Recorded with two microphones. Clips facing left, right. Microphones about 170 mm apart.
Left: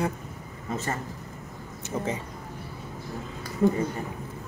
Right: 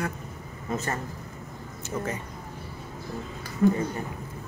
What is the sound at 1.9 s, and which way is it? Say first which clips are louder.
Speech: left 1 dB; 25° left (ahead or behind).